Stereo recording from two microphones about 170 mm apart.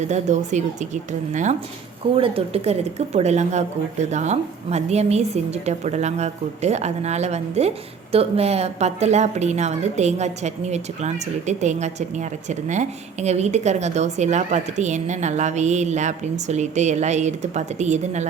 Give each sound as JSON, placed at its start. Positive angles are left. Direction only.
{"t": 0.1, "sound": "a woman's voice", "side_deg": -45}
{"t": 2.1, "sound": "a woman's voice", "side_deg": -35}